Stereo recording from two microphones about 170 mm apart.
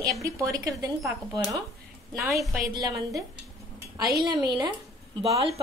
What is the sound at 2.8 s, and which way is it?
Speech, 20° right (ahead or behind).